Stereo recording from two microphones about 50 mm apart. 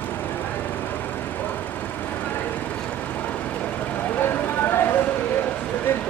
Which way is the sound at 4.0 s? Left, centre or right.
Left.